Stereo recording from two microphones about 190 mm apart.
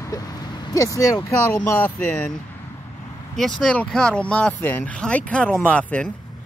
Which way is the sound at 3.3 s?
Centre (ahead or behind).